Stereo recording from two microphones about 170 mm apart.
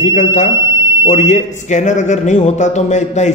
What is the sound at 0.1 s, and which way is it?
A man's voice, 45° left (ahead or behind).